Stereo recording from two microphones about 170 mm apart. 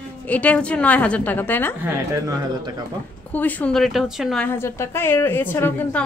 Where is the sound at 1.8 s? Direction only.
20° right (ahead or behind).